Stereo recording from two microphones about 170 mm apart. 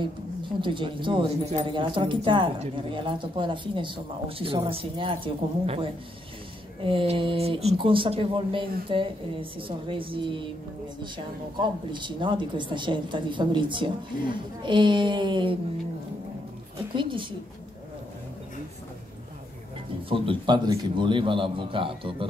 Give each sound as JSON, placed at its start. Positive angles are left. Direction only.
{"t": 0.6, "sound": "speech", "side_deg": -30}
{"t": 11.6, "sound": "speech", "side_deg": -30}
{"t": 16.9, "sound": "speech", "side_deg": -30}
{"t": 20.1, "sound": "speech", "side_deg": -30}